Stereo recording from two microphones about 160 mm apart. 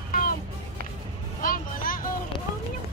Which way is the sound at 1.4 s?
60° left (ahead or behind).